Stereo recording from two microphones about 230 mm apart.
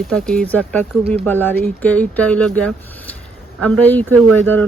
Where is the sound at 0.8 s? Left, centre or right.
Right.